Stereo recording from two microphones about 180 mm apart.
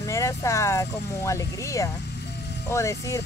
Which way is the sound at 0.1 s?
15° left (ahead or behind).